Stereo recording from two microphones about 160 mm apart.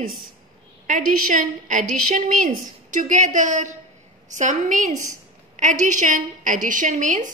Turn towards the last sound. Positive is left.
turn(degrees=-55)  # may be behind; listen again after turning